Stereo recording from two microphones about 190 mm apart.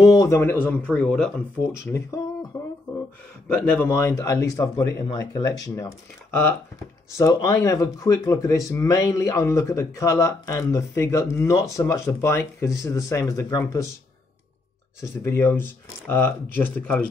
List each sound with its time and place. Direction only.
0.0 s speech: 20° left (ahead or behind)
1.9 s speech: 15° left (ahead or behind)
3.4 s speech: 5° left (ahead or behind)
15.0 s speech: 15° left (ahead or behind)